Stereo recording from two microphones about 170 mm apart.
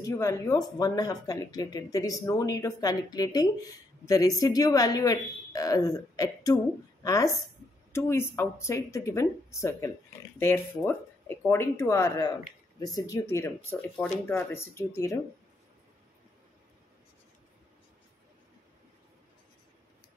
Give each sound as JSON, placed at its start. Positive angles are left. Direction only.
{"t": 0.0, "sound": "speech", "side_deg": 20}